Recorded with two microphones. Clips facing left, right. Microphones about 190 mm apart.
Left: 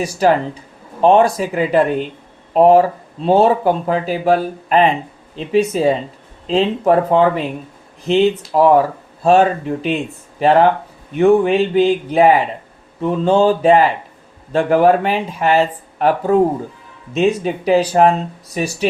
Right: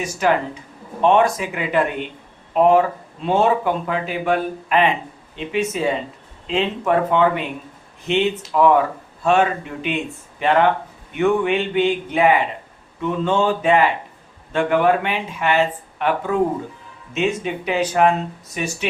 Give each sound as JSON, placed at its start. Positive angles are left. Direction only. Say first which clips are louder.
{"t": 0.0, "sound": "speech", "louder": "left 5 dB", "side_deg": 35}